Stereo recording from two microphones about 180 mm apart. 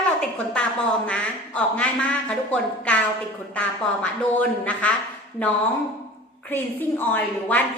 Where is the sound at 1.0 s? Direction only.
5° left (ahead or behind).